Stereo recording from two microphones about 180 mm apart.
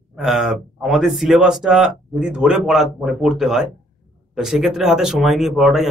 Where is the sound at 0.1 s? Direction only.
Centre (ahead or behind).